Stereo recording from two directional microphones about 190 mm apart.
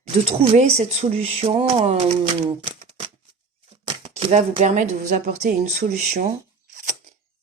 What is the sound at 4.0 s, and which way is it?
Speech, 30° right (ahead or behind).